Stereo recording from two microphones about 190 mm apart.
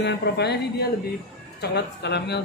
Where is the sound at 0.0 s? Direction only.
60° left (ahead or behind).